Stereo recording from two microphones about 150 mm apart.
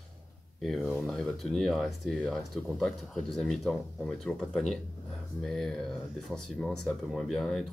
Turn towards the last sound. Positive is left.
turn(degrees=5)  # may be behind; listen again after turning